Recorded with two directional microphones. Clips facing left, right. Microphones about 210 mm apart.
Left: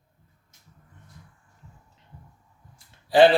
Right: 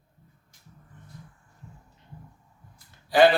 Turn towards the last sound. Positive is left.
turn(degrees=25)  # may be behind; listen again after turning